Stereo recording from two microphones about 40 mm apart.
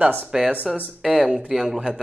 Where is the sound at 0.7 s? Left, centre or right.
Centre.